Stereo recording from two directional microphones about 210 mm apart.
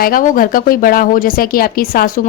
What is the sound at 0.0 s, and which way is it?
A woman's voice, 40° left (ahead or behind).